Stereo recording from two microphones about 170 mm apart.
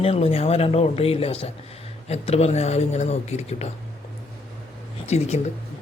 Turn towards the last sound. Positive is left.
turn(degrees=40)  # may be behind; listen again after turning